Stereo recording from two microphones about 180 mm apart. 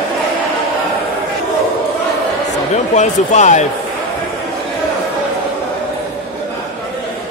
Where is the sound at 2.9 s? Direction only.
40° left (ahead or behind).